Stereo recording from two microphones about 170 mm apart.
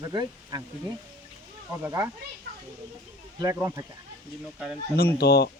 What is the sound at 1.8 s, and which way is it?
Speech, 15° right (ahead or behind).